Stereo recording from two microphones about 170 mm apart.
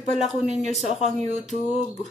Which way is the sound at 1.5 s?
40° left (ahead or behind).